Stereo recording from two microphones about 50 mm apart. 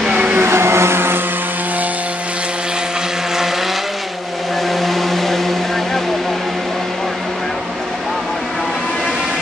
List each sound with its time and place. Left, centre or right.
0.1 s vehicle: right
0.4 s vehicle: right
4.8 s a sound: centre